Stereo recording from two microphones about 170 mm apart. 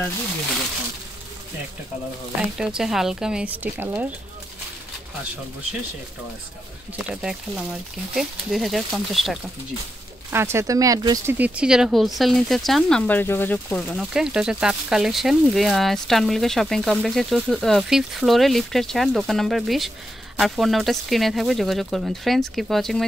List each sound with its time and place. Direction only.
2.8 s a woman's voice: centre (ahead or behind)
7.1 s a woman's voice: 5° right (ahead or behind)
10.3 s a woman's voice: 15° right (ahead or behind)
11.3 s speech: 10° right (ahead or behind)